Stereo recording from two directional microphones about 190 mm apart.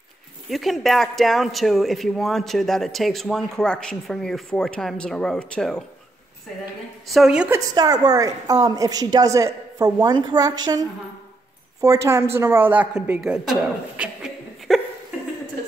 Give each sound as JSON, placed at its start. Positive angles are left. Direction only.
{"t": 0.5, "sound": "speech", "side_deg": 0}
{"t": 7.1, "sound": "speech", "side_deg": 0}
{"t": 7.7, "sound": "a woman's voice", "side_deg": -20}